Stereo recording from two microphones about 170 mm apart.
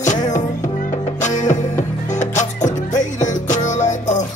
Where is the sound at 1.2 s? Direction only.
45° left (ahead or behind).